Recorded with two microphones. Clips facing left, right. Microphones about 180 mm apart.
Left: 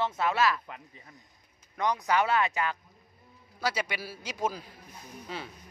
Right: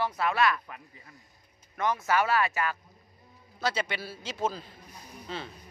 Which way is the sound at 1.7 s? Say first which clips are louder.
Even; 15° left (ahead or behind).